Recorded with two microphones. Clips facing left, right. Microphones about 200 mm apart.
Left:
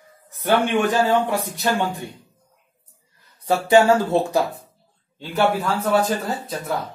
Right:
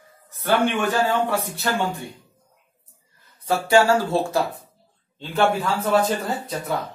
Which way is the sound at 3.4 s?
20° left (ahead or behind).